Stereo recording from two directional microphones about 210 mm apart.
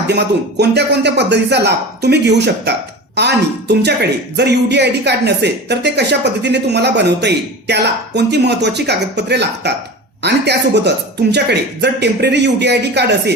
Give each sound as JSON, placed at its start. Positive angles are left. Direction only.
{"t": 0.1, "sound": "speech", "side_deg": -55}